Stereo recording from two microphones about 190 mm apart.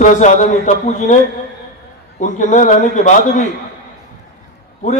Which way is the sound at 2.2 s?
40° left (ahead or behind).